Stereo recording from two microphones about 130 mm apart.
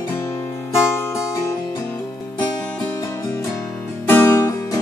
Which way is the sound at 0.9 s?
20° left (ahead or behind).